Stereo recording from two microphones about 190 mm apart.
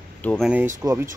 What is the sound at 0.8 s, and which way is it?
Speech, 15° right (ahead or behind).